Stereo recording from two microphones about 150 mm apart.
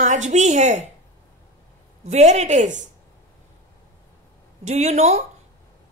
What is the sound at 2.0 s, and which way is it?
Speech, 45° right (ahead or behind).